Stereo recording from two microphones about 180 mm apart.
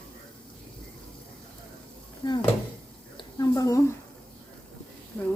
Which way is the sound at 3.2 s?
20° left (ahead or behind).